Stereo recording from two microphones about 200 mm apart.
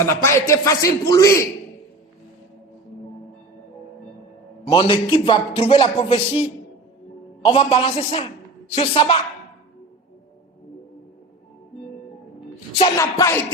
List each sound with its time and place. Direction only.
0.0 s a man's voice: 15° left (ahead or behind)
4.6 s speech: 25° left (ahead or behind)
13.0 s a man's voice: 15° left (ahead or behind)